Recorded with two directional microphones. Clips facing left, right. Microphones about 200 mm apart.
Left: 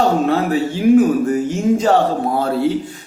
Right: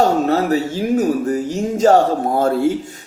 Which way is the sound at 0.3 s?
40° right (ahead or behind).